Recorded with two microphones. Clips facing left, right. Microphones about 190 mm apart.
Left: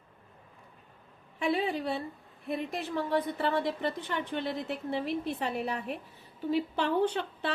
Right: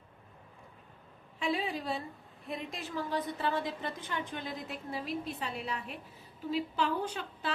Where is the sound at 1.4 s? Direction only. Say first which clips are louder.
Left 4 dB; 65° left (ahead or behind).